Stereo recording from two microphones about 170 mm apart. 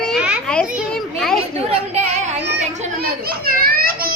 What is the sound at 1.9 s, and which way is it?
Speech, 40° right (ahead or behind).